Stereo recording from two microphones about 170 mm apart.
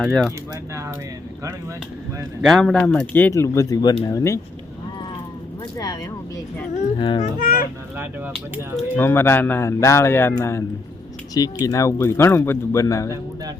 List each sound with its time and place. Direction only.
0.0 s speech: centre (ahead or behind)
2.4 s speech: centre (ahead or behind); by 4.4 s 20° left (ahead or behind)
5.7 s a child's voice: 20° left (ahead or behind)
7.2 s a child's voice: 50° left (ahead or behind)
8.7 s speech: 10° left (ahead or behind)
11.6 s speech: 20° left (ahead or behind)